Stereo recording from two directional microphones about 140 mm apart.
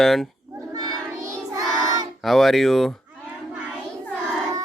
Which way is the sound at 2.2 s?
Centre (ahead or behind).